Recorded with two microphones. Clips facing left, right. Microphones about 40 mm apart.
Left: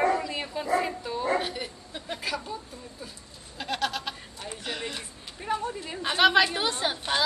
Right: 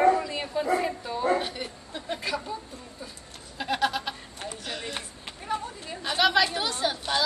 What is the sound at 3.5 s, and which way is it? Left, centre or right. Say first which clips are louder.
Goat: right 3 dB; centre.